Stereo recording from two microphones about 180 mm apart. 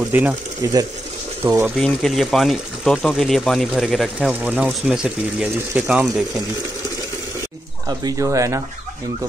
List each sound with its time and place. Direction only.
0.1 s speech: 10° right (ahead or behind)
1.4 s speech: 15° right (ahead or behind)
1.8 s speech: centre (ahead or behind)
8.0 s speech: 15° right (ahead or behind)